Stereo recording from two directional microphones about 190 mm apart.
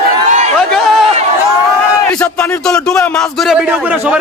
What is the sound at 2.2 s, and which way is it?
Speech, 5° left (ahead or behind).